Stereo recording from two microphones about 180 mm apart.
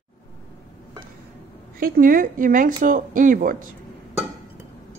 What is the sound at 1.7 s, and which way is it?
Speech, 55° right (ahead or behind).